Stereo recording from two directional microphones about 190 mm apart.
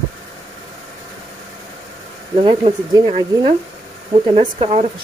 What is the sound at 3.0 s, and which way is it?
Speech, 35° right (ahead or behind).